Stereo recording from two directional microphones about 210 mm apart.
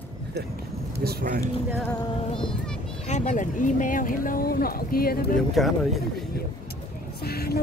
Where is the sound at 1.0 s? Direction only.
50° right (ahead or behind).